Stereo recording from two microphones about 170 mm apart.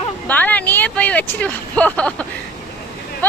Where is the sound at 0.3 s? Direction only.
10° left (ahead or behind).